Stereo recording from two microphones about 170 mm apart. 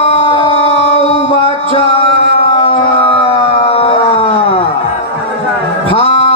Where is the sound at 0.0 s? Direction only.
35° left (ahead or behind).